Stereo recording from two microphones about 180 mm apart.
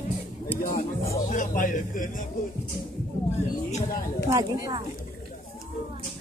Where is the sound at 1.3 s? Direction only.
45° left (ahead or behind).